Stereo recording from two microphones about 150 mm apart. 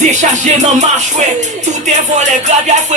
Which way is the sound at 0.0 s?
55° right (ahead or behind).